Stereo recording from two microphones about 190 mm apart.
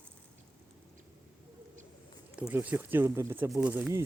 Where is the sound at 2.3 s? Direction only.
5° right (ahead or behind).